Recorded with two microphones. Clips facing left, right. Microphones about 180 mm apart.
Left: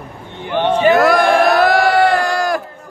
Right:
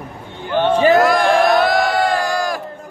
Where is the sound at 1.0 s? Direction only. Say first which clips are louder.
Left 1 dB; 65° left (ahead or behind).